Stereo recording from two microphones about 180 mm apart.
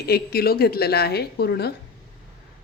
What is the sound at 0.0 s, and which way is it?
Speech, 60° left (ahead or behind).